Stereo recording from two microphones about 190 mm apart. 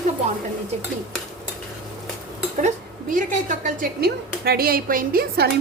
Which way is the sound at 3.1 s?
40° right (ahead or behind).